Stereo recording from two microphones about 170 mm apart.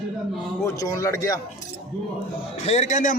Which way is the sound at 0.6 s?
20° left (ahead or behind).